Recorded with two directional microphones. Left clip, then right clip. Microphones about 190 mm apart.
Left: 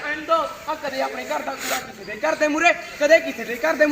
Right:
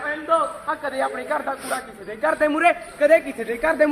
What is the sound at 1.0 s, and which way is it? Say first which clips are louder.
A man's voice: right 1 dB; 5° right (ahead or behind).